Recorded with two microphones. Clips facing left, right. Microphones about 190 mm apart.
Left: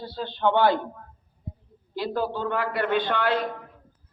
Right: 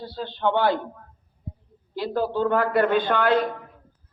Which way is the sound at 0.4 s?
45° right (ahead or behind).